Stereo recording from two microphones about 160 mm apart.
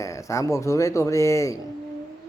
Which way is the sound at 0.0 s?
20° left (ahead or behind).